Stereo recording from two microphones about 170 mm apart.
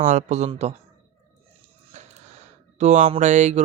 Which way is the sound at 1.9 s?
40° right (ahead or behind).